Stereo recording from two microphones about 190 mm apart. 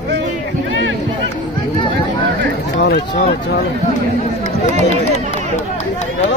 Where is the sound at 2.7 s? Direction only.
65° left (ahead or behind).